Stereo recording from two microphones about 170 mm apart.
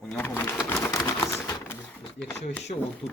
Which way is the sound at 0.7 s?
15° left (ahead or behind).